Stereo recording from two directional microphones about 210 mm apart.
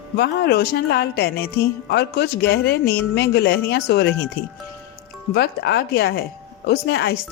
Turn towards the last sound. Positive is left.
turn(degrees=50)  # may be behind; listen again after turning